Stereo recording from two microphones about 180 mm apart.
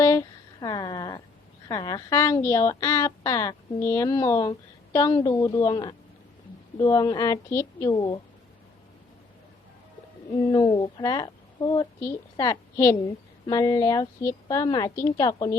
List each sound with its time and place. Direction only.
0.0 s a sound: 20° left (ahead or behind)
1.6 s a woman's voice: 20° left (ahead or behind)
10.5 s a woman's voice: 25° left (ahead or behind)